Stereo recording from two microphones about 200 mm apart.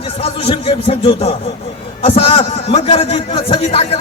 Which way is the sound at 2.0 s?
25° left (ahead or behind).